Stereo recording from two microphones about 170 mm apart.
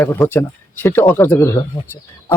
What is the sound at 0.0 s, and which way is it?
Speech, 10° left (ahead or behind).